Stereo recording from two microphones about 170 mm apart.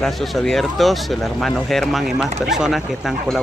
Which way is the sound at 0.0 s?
Centre (ahead or behind).